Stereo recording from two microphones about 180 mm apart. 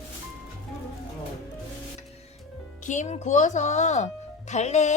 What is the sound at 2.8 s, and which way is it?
Speech, 40° left (ahead or behind).